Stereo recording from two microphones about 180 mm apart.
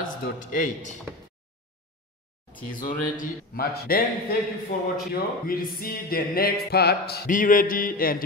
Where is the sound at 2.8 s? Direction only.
50° left (ahead or behind).